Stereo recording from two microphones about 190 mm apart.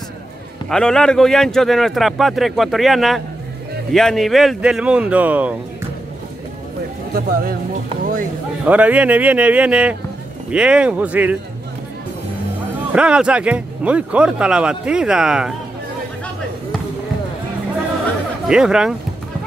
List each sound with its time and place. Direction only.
0.7 s speech: 5° left (ahead or behind)
7.2 s speech: 50° right (ahead or behind)
8.6 s speech: 5° right (ahead or behind)
12.9 s speech: 5° right (ahead or behind)
18.5 s speech: 5° right (ahead or behind)